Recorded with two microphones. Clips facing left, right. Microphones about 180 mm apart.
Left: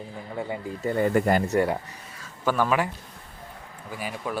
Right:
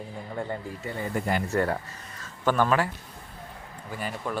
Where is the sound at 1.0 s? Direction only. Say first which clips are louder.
Left 8 dB; 65° left (ahead or behind).